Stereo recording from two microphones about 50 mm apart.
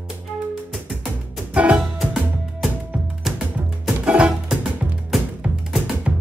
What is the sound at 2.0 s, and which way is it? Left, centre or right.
Music, centre.